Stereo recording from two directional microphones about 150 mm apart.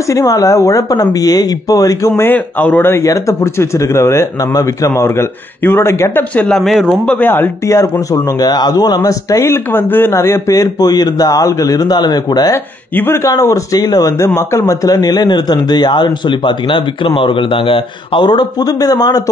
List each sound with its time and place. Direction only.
0.1 s speech: 20° left (ahead or behind)
12.9 s speech: 15° left (ahead or behind)